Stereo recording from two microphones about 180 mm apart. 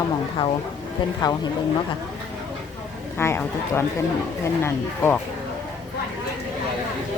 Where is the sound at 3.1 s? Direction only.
15° left (ahead or behind).